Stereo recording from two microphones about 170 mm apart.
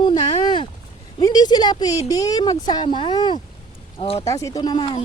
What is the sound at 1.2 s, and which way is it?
Speech, 25° left (ahead or behind).